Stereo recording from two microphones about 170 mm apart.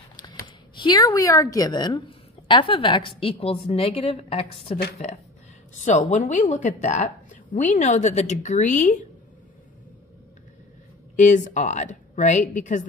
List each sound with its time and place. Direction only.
0.1 s a woman's voice: 25° left (ahead or behind); by 9.0 s 45° left (ahead or behind)
11.1 s a woman's voice: 45° left (ahead or behind)